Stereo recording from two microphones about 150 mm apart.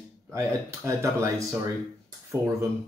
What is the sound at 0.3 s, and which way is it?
Speech, 20° right (ahead or behind).